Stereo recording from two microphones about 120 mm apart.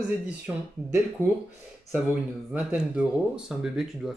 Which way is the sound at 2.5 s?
10° right (ahead or behind).